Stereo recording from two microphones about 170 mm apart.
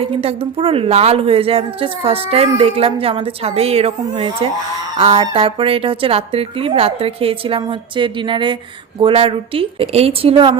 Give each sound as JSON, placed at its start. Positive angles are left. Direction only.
{"t": 0.0, "sound": "speech", "side_deg": -35}